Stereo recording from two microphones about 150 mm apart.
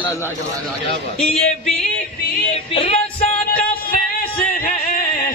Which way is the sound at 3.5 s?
80° left.